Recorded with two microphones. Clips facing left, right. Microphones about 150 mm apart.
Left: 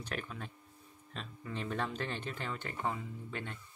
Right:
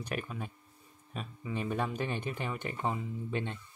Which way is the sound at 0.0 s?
10° right (ahead or behind).